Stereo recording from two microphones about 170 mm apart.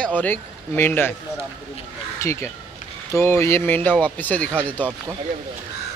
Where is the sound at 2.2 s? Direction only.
15° left (ahead or behind).